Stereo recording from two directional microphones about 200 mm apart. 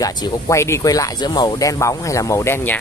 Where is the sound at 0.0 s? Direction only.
15° left (ahead or behind).